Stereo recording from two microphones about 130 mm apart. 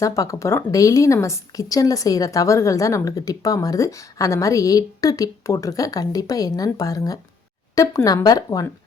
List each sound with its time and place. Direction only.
0.0 s a woman's voice: 25° left (ahead or behind)